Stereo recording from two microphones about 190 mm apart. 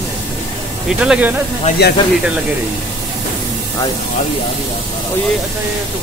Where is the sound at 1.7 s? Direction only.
40° left (ahead or behind).